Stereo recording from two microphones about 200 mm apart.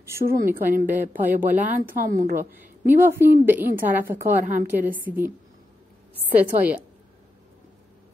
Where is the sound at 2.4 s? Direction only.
10° right (ahead or behind).